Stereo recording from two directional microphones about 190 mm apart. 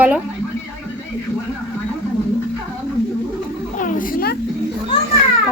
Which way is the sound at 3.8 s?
45° left (ahead or behind).